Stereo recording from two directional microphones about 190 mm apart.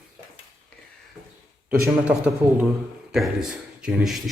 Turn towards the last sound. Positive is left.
turn(degrees=0)  # may be behind; listen again after turning